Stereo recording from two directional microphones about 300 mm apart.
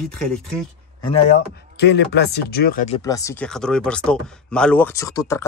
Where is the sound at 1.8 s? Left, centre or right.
Left.